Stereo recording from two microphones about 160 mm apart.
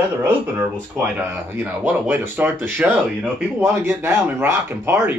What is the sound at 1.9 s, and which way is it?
Speech, 10° right (ahead or behind).